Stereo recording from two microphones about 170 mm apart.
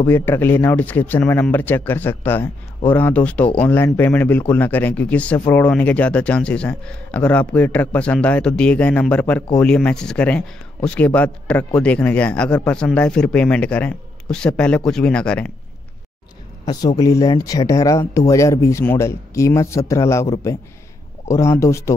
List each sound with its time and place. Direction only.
0.0 s speech: 15° left (ahead or behind)
16.6 s speech: 20° left (ahead or behind)